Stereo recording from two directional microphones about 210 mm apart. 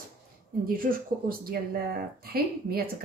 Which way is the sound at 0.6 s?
40° right (ahead or behind).